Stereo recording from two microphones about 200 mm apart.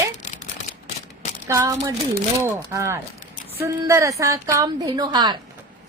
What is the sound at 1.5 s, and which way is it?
A woman's voice, 15° right (ahead or behind).